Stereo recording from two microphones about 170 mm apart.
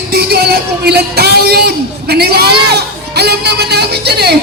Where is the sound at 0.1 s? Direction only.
70° right (ahead or behind).